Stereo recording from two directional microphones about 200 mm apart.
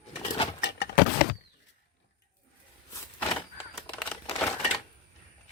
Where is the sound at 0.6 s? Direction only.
60° left (ahead or behind).